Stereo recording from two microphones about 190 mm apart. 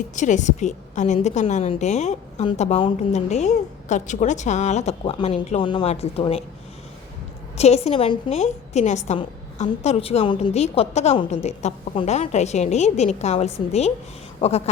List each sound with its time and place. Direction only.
0.2 s a woman's voice: 40° left (ahead or behind)
7.5 s a woman's voice: 35° left (ahead or behind)